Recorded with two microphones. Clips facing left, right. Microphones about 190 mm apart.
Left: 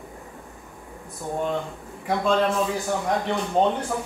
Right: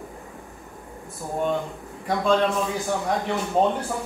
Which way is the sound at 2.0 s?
Centre (ahead or behind).